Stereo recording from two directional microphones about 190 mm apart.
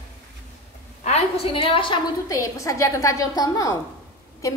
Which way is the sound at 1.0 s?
30° left (ahead or behind).